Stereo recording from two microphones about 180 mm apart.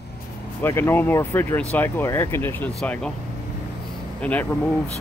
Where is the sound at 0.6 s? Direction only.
15° left (ahead or behind).